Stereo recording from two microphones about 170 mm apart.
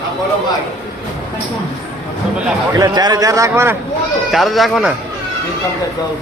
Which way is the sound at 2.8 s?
20° right (ahead or behind).